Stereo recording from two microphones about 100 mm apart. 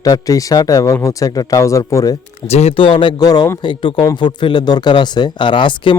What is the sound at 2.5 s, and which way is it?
Speech, 80° left.